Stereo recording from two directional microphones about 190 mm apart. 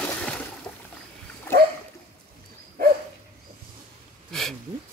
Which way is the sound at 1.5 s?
10° left (ahead or behind).